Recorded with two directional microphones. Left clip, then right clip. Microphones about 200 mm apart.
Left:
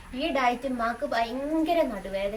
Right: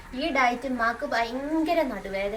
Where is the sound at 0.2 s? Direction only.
Centre (ahead or behind).